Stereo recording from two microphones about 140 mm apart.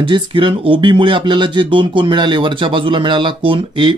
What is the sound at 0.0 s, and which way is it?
Speech, 35° right (ahead or behind).